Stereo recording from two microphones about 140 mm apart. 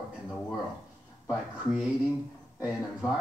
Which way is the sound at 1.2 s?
5° right (ahead or behind).